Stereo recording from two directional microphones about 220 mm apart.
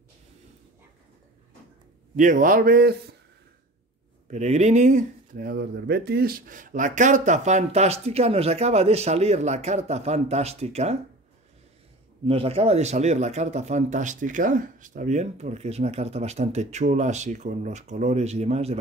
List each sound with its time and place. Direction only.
2.1 s speech: 35° right (ahead or behind)
4.3 s speech: 30° right (ahead or behind)
12.3 s speech: 25° right (ahead or behind)